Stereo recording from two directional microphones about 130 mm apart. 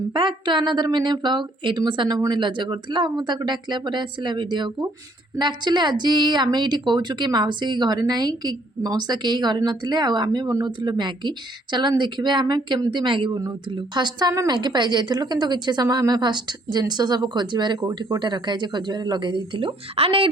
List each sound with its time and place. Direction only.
0.1 s a woman's voice: 40° right (ahead or behind)